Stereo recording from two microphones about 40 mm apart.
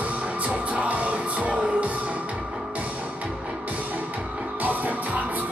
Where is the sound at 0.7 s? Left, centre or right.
Right.